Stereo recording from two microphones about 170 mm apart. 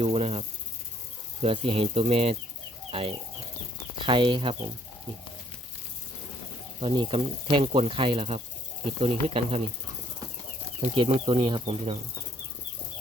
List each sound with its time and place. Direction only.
0.0 s snake: 35° right (ahead or behind)
1.4 s speech: 35° right (ahead or behind)
6.7 s speech: 30° right (ahead or behind)
10.8 s speech: 35° right (ahead or behind)